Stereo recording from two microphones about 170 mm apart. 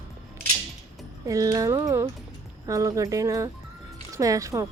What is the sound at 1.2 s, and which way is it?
Speech, 20° right (ahead or behind).